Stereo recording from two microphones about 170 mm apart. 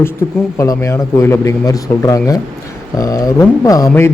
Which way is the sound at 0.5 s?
20° left (ahead or behind).